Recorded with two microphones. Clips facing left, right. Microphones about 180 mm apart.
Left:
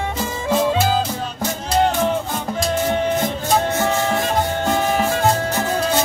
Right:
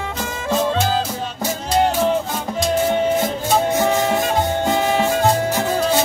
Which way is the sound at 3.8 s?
15° right (ahead or behind).